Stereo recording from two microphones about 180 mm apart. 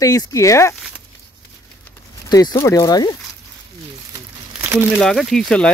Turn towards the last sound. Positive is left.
turn(degrees=5)  # may be behind; listen again after turning